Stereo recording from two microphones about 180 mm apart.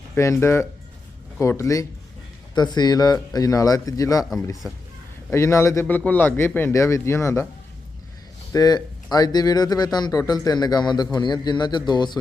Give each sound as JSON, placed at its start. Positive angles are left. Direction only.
{"t": 0.1, "sound": "a man's voice", "side_deg": 15}
{"t": 8.5, "sound": "speech", "side_deg": 20}